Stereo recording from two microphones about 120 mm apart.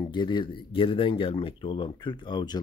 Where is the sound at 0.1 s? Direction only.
40° left (ahead or behind).